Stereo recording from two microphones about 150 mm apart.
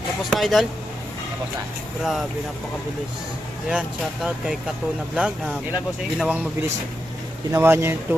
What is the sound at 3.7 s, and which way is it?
Speech, 5° right (ahead or behind).